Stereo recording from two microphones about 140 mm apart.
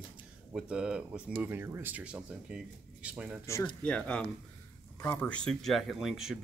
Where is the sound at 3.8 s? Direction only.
10° left (ahead or behind).